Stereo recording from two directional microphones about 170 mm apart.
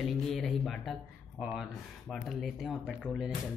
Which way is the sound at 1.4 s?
Centre (ahead or behind).